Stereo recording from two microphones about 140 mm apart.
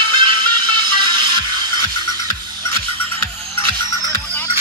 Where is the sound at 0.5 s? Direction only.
35° right (ahead or behind).